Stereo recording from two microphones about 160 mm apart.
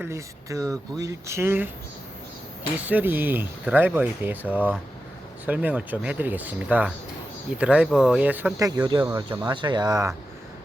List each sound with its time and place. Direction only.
0.0 s speech: 20° right (ahead or behind)
2.8 s speech: 10° right (ahead or behind); by 9.0 s 30° right (ahead or behind)
9.0 s speech: 15° right (ahead or behind)
9.4 s speech: 30° right (ahead or behind)